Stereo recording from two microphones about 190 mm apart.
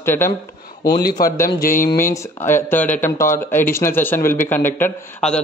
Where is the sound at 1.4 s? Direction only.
45° left (ahead or behind).